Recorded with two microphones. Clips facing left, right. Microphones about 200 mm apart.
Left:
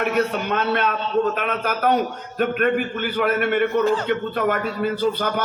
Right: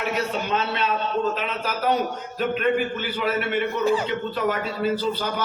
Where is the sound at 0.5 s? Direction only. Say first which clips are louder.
Left 3 dB; 55° left (ahead or behind).